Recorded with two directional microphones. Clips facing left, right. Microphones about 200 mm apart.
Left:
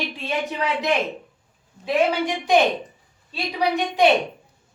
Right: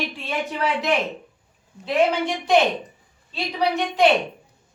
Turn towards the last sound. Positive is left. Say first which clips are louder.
# even
turn(degrees=15)  # may be behind; listen again after turning